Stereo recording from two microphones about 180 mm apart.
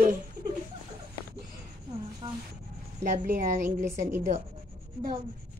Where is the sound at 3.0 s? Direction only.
45° right (ahead or behind).